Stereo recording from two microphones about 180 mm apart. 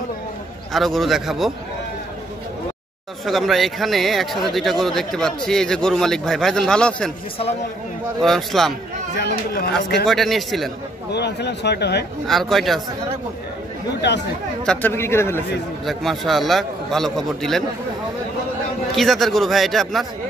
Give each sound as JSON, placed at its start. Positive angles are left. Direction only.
{"t": 0.7, "sound": "speech", "side_deg": 0}
{"t": 3.3, "sound": "speech", "side_deg": 0}
{"t": 8.2, "sound": "speech", "side_deg": 0}
{"t": 10.0, "sound": "speech", "side_deg": 0}
{"t": 11.1, "sound": "speech", "side_deg": 70}
{"t": 12.3, "sound": "speech", "side_deg": 0}
{"t": 14.6, "sound": "speech", "side_deg": 5}
{"t": 15.8, "sound": "speech", "side_deg": 0}
{"t": 18.9, "sound": "speech", "side_deg": 0}